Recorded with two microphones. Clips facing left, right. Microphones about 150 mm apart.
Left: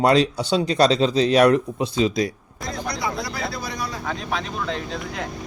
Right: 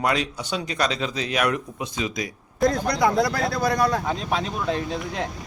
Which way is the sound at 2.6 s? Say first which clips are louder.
Right 8 dB; 55° right (ahead or behind).